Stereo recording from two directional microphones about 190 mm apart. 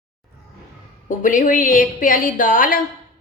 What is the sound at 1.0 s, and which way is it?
A woman's voice, 45° left (ahead or behind).